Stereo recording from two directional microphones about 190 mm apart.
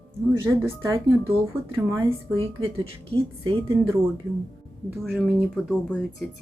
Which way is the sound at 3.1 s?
30° right (ahead or behind).